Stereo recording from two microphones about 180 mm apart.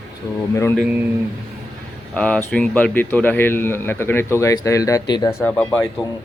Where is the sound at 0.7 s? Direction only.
Centre (ahead or behind).